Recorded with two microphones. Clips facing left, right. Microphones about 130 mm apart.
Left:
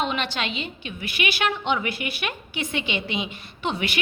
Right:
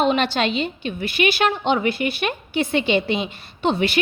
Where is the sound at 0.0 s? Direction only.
35° right (ahead or behind).